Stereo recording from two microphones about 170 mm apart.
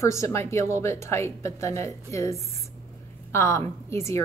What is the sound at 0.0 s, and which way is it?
A woman's voice, 15° left (ahead or behind).